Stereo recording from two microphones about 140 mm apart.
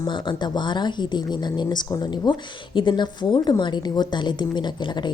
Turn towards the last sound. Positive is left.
turn(degrees=35)  # may be behind; listen again after turning